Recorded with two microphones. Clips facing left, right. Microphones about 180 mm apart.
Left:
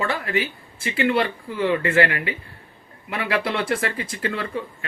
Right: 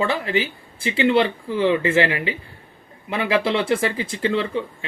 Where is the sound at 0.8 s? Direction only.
25° right (ahead or behind).